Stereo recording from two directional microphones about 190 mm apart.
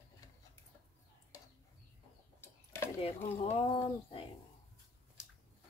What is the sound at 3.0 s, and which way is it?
Speech, 30° left (ahead or behind).